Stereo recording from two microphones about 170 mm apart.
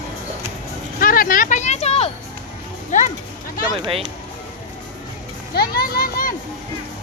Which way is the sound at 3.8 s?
35° right (ahead or behind).